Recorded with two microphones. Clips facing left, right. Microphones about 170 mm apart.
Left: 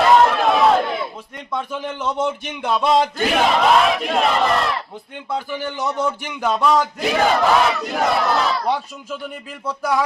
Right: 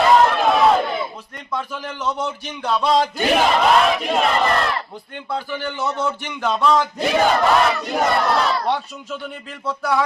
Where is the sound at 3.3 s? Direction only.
Centre (ahead or behind).